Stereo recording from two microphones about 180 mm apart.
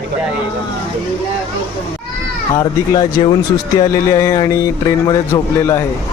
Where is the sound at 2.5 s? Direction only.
20° left (ahead or behind).